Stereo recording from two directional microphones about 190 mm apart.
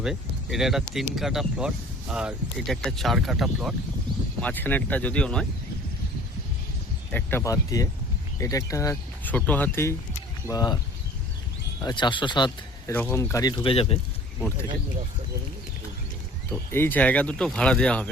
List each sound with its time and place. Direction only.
0.0 s speech: centre (ahead or behind)
4.4 s speech: 10° left (ahead or behind)
7.1 s speech: 10° left (ahead or behind)
11.8 s speech: 20° left (ahead or behind)
12.9 s speech: 10° left (ahead or behind); by 14.0 s 30° left (ahead or behind)
16.5 s speech: 10° left (ahead or behind)